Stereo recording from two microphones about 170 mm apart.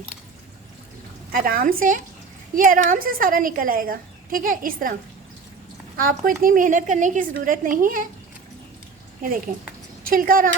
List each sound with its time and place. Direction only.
1.3 s a woman's voice: 55° right (ahead or behind)
6.0 s a woman's voice: 55° right (ahead or behind)
10.0 s a woman's voice: 55° right (ahead or behind)